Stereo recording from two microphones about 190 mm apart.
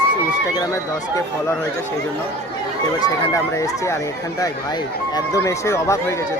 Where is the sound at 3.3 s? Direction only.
15° left (ahead or behind).